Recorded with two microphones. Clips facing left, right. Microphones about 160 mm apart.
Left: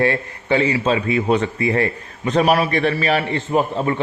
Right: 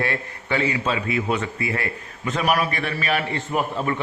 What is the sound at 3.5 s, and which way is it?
Speech, 25° left (ahead or behind).